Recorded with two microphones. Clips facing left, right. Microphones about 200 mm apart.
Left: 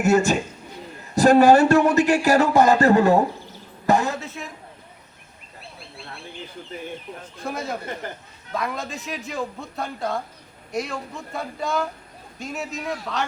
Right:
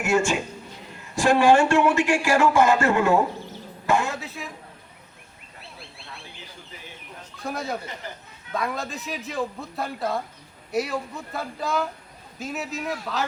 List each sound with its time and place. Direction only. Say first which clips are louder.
0.0 s a man's voice: left 4 dB; 40° left (ahead or behind)
7.4 s a man's voice: left 1 dB; centre (ahead or behind)